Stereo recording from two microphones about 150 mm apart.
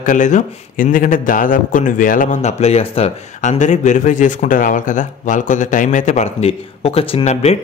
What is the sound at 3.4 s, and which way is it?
Speech, 55° left (ahead or behind).